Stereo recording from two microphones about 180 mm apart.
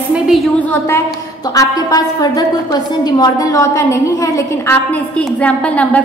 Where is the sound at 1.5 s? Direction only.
20° left (ahead or behind).